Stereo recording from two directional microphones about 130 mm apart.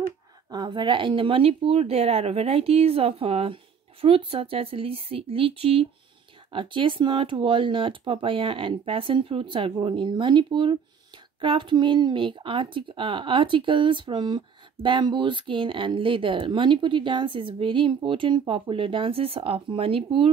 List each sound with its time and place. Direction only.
0.5 s speech: 35° right (ahead or behind)